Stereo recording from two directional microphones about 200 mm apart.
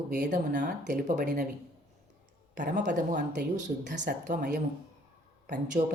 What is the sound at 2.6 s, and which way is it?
Speech, 45° right (ahead or behind).